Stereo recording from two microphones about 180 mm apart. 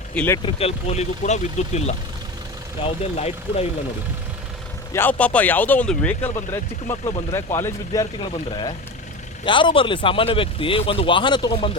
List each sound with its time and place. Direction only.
0.1 s speech: 5° left (ahead or behind)
0.4 s speech: 35° left (ahead or behind)
4.9 s speech: 10° left (ahead or behind)
7.0 s speech: 30° left (ahead or behind)
7.3 s speech: 15° left (ahead or behind)
8.2 s speech: 25° left (ahead or behind)